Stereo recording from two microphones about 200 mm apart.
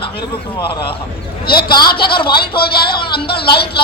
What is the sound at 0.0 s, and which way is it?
Speech, 25° left (ahead or behind).